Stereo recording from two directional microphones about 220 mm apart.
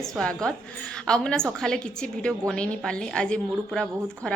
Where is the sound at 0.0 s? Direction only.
Centre (ahead or behind).